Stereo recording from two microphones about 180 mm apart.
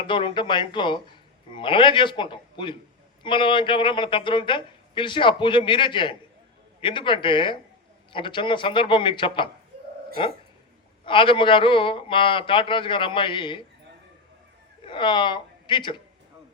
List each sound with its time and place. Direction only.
0.0 s a woman's voice: 30° left (ahead or behind)
11.0 s a woman's voice: 30° left (ahead or behind)
14.8 s speech: 25° left (ahead or behind)